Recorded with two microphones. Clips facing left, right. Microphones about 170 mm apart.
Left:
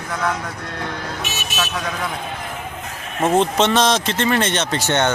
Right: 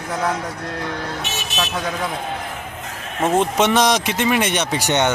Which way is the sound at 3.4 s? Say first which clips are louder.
Even; 15° right (ahead or behind).